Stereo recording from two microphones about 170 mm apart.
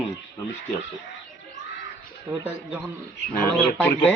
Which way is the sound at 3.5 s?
5° left (ahead or behind).